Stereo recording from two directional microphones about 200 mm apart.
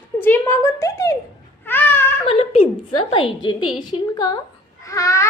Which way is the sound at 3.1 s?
25° left (ahead or behind).